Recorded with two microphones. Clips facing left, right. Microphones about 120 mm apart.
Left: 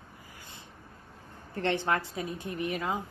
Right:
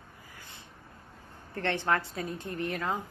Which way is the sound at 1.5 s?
20° left (ahead or behind).